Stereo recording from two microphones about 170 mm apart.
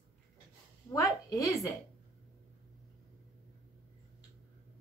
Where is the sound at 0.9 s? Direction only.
20° left (ahead or behind).